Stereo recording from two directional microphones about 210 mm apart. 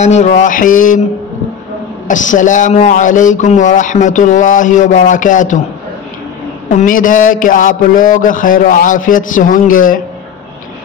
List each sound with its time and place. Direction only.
0.0 s speech: 35° left (ahead or behind)
2.0 s speech: 35° left (ahead or behind)
6.7 s speech: 40° left (ahead or behind)